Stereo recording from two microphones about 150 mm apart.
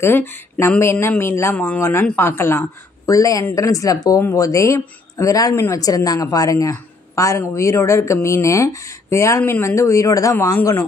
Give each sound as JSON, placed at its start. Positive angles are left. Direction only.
{"t": 0.0, "sound": "speech", "side_deg": 15}